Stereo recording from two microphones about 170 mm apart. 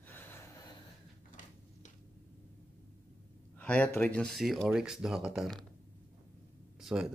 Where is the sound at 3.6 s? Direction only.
10° left (ahead or behind).